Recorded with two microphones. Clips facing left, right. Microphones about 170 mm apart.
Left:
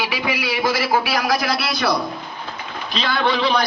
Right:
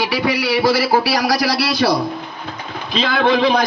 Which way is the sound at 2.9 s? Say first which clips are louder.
Right 5 dB; 45° right (ahead or behind).